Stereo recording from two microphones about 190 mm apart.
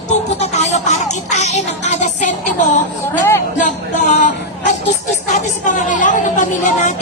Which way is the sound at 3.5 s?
40° left (ahead or behind).